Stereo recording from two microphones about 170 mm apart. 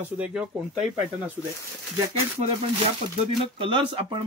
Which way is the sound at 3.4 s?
30° right (ahead or behind).